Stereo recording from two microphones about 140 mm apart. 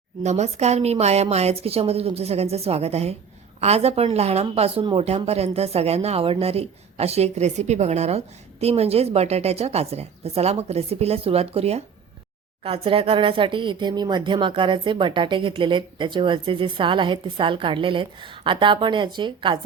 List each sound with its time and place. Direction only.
0.2 s speech: 55° right (ahead or behind); by 19.5 s 35° right (ahead or behind)